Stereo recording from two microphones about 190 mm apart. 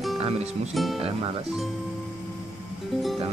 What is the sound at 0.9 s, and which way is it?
Speech, 30° right (ahead or behind).